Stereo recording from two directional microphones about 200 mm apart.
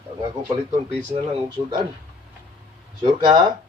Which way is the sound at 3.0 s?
25° right (ahead or behind).